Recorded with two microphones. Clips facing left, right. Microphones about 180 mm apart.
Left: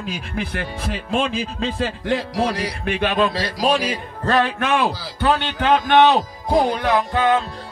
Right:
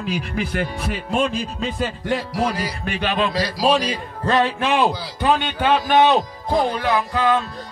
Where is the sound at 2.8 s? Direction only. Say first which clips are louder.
Left 3 dB; 50° left (ahead or behind).